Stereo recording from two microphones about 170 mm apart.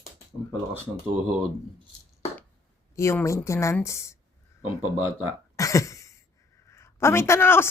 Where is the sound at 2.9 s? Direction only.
15° left (ahead or behind).